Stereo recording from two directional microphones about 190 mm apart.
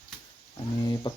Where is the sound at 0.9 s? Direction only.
25° left (ahead or behind).